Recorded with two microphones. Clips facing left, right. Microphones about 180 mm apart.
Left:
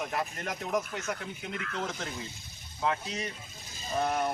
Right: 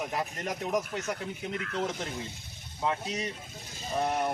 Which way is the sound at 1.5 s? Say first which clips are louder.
Right 3 dB; 35° right (ahead or behind).